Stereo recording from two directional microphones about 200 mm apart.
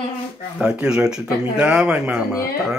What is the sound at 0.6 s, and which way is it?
Speech, 5° right (ahead or behind).